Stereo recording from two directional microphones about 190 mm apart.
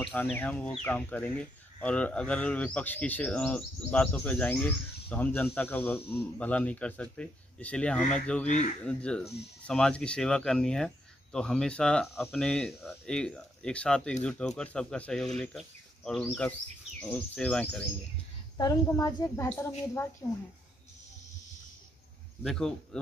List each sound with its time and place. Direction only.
0.0 s speech: 10° left (ahead or behind)
8.5 s speech: 40° left (ahead or behind)
8.8 s speech: 5° left (ahead or behind)
18.6 s speech: 20° left (ahead or behind)
22.4 s speech: centre (ahead or behind)